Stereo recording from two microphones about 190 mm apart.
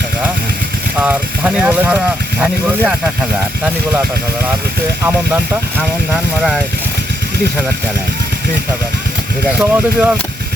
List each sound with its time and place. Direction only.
0.9 s speech: 10° right (ahead or behind)
5.0 s speech: 10° right (ahead or behind)
9.6 s speech: 5° right (ahead or behind)